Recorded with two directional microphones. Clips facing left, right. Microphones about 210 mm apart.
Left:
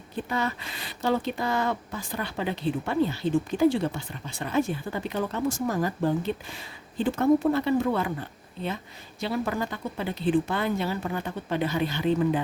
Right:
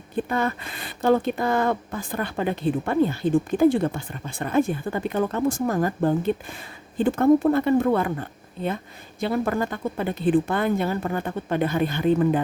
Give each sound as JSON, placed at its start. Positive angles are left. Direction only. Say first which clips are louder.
{"t": 0.2, "sound": "speech", "louder": "right 5 dB", "side_deg": -55}